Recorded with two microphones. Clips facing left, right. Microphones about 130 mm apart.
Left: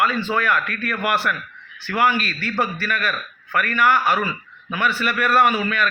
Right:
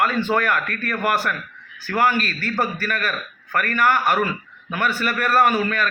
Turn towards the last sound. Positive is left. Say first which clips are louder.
# even
turn(degrees=-45)  # may be behind; listen again after turning